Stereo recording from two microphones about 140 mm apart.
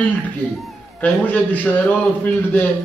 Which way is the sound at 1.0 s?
10° left (ahead or behind).